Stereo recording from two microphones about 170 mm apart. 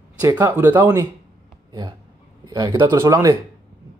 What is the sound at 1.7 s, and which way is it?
Speech, 25° right (ahead or behind).